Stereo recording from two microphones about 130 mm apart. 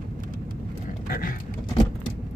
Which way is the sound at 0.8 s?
90° left.